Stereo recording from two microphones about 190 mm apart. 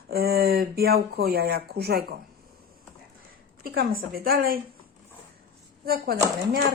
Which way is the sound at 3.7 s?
50° right (ahead or behind).